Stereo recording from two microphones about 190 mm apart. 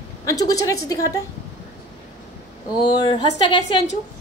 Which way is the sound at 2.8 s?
25° left (ahead or behind).